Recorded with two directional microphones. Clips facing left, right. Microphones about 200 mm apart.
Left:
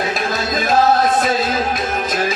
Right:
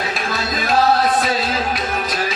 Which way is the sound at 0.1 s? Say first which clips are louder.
Left 3 dB; 45° left (ahead or behind).